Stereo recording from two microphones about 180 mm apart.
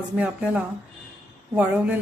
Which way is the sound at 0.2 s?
5° right (ahead or behind).